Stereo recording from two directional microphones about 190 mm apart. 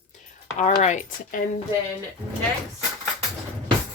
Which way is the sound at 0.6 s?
35° left (ahead or behind).